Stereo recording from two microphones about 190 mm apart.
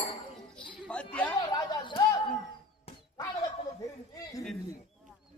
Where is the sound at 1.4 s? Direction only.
20° left (ahead or behind).